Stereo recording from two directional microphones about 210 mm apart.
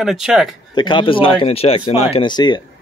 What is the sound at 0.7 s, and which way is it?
Speech, 20° left (ahead or behind).